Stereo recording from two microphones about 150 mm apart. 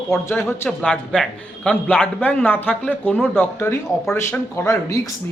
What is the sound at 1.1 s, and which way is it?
A man's voice, 5° left (ahead or behind).